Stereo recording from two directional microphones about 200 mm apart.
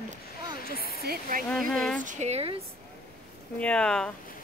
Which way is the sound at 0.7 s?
50° left (ahead or behind).